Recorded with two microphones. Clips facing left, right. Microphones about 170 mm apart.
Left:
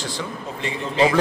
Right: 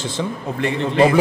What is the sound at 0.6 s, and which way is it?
Speech, 60° right (ahead or behind).